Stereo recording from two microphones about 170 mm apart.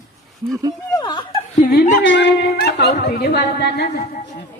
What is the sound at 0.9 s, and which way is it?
Laughter, 25° left (ahead or behind).